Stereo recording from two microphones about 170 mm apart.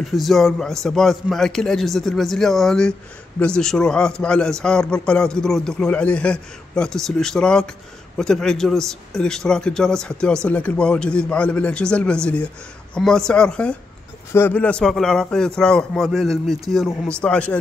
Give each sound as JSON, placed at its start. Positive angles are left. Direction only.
{"t": 0.0, "sound": "a man's voice", "side_deg": 0}